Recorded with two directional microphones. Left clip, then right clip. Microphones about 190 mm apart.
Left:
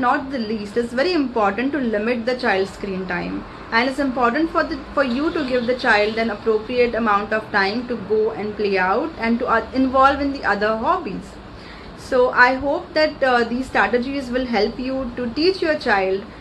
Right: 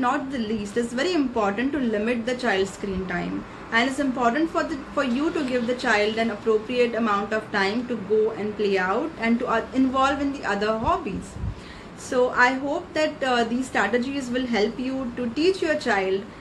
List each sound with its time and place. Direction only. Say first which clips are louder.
0.9 s a woman's voice: left 5 dB; 20° right (ahead or behind)
12.1 s a woman's voice: left 5 dB; 20° right (ahead or behind)